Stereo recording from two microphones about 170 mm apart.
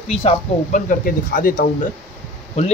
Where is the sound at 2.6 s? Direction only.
40° left (ahead or behind).